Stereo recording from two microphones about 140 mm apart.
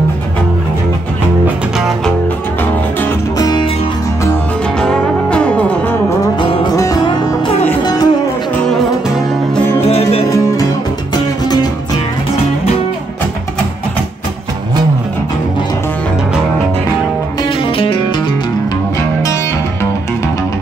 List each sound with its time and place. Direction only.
1.4 s music: 5° right (ahead or behind)
3.3 s music: 25° left (ahead or behind)
4.7 s music: 5° left (ahead or behind)
6.3 s music: 35° left (ahead or behind)
9.8 s music: 45° left (ahead or behind)
10.3 s music: 25° left (ahead or behind)
17.4 s music: 40° left (ahead or behind)